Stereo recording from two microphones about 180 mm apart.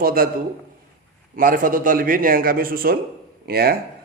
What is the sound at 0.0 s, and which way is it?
Speech, 55° right (ahead or behind).